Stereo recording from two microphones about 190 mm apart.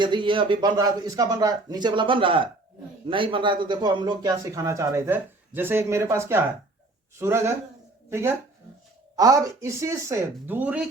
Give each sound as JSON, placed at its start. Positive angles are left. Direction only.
{"t": 0.0, "sound": "speech", "side_deg": -25}